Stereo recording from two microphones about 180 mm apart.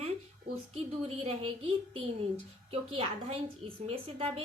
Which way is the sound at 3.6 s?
30° right (ahead or behind).